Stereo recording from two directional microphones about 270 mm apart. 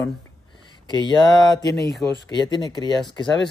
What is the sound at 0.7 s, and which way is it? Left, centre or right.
Speech, centre.